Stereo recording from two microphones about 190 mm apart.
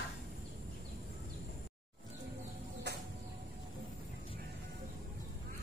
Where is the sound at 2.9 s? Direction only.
60° right (ahead or behind).